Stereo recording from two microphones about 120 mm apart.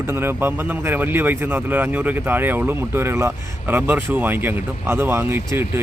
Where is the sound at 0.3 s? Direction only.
20° right (ahead or behind).